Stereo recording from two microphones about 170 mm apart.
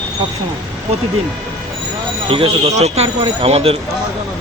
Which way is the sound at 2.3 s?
35° right (ahead or behind).